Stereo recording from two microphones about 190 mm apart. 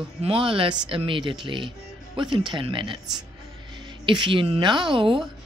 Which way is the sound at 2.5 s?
25° right (ahead or behind).